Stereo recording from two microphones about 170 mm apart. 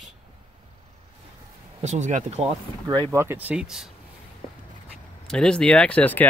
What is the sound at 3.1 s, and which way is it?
Speech, 10° right (ahead or behind).